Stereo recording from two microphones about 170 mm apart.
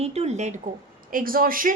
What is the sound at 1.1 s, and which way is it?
Speech, 55° right (ahead or behind).